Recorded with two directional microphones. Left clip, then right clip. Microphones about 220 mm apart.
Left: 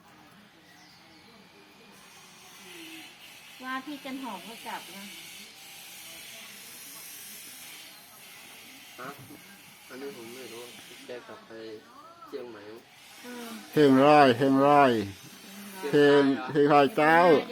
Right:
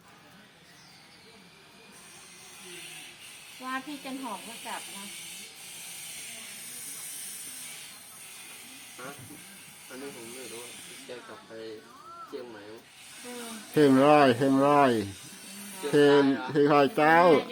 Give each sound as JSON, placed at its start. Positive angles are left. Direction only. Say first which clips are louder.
{"t": 3.6, "sound": "speech", "louder": "even", "side_deg": -15}
{"t": 13.7, "sound": "speech", "louder": "left 1 dB", "side_deg": 5}
{"t": 16.2, "sound": "speech", "louder": "even", "side_deg": 15}
{"t": 16.5, "sound": "speech", "louder": "left 2 dB", "side_deg": 0}